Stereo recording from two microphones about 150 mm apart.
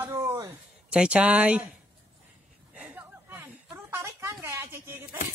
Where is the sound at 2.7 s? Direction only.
5° right (ahead or behind).